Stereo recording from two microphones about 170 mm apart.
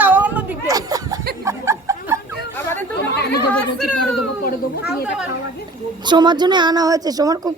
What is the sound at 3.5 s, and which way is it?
Speech, 5° left (ahead or behind).